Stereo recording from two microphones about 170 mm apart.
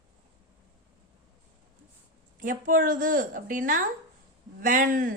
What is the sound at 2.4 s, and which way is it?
A woman's voice, 55° right (ahead or behind).